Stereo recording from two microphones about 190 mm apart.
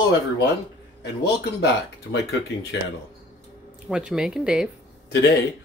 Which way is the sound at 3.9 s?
5° right (ahead or behind).